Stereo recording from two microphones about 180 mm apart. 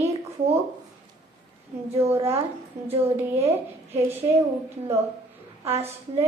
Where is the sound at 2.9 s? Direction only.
35° right (ahead or behind).